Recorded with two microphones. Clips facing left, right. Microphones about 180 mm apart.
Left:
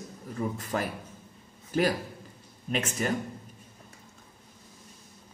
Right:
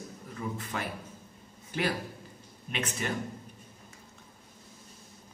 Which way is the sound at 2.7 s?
40° left (ahead or behind).